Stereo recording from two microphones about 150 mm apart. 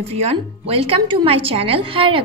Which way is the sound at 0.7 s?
40° right (ahead or behind).